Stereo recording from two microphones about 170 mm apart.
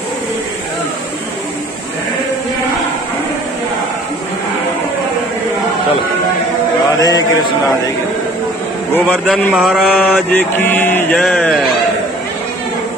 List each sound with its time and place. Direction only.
7.0 s a man's voice: 20° left (ahead or behind)
8.9 s a man's voice: 10° left (ahead or behind)
9.5 s mantra: 5° right (ahead or behind)